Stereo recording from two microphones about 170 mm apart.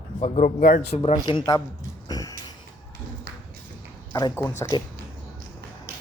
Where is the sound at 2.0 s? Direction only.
20° left (ahead or behind).